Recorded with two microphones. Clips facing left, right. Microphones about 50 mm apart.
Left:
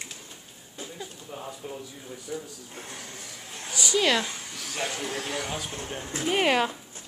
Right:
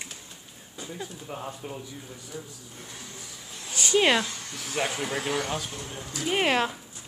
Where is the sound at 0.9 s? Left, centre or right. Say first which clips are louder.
Right 5 dB; centre.